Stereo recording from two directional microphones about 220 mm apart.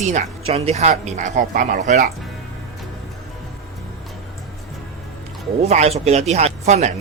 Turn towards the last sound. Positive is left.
turn(degrees=-30)  # may be behind; listen again after turning